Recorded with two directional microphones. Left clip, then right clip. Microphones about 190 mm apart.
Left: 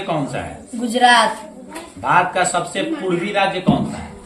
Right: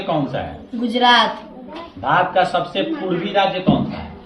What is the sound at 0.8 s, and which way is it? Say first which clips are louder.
Speech: left 1 dB; 30° left (ahead or behind).